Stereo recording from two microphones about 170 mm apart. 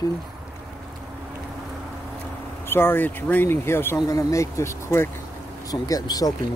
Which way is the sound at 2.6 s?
15° left (ahead or behind).